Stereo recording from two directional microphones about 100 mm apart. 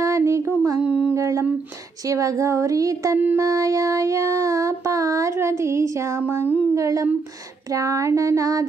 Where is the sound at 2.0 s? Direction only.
35° right (ahead or behind).